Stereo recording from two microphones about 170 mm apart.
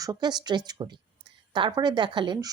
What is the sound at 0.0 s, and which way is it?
A woman's voice, 25° right (ahead or behind).